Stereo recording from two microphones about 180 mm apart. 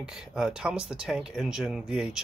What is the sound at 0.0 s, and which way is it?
Speech, 5° right (ahead or behind).